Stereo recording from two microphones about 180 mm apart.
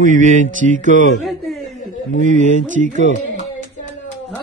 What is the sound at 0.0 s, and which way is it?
Speech, 45° right (ahead or behind).